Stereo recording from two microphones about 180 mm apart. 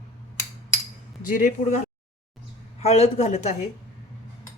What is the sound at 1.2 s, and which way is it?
Speech, 50° left (ahead or behind).